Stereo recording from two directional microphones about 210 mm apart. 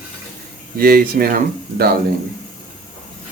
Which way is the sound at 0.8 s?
45° right (ahead or behind).